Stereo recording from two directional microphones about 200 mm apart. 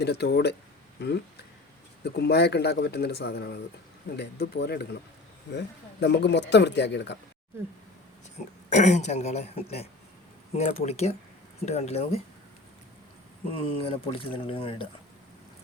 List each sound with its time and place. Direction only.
0.0 s speech: 55° left (ahead or behind)
8.7 s speech: 35° left (ahead or behind)
13.7 s speech: 25° left (ahead or behind)